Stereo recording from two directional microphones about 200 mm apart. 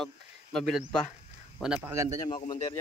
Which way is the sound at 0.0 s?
5° left (ahead or behind).